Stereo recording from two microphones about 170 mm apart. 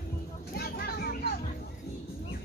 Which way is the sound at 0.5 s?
65° left (ahead or behind).